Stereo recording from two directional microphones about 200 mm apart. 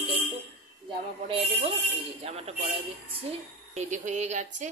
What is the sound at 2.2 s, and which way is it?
Speech, 30° right (ahead or behind).